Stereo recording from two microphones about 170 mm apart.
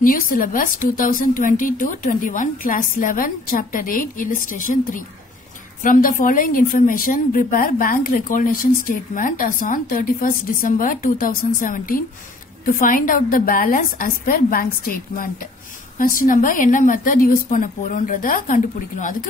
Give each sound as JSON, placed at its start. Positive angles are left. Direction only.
{"t": 0.0, "sound": "a woman's voice", "side_deg": 55}